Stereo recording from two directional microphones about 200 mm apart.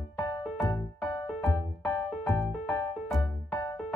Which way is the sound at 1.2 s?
Centre (ahead or behind).